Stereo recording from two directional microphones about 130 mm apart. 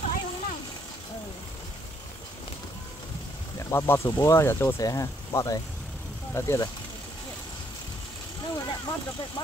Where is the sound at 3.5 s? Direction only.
20° left (ahead or behind).